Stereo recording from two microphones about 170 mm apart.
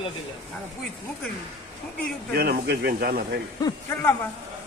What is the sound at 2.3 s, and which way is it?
Speech, 70° right (ahead or behind).